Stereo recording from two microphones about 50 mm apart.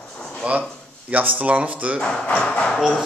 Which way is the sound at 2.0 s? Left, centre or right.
Left.